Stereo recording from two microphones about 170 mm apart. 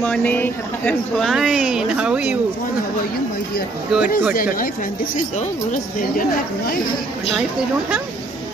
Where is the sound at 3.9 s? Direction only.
5° right (ahead or behind).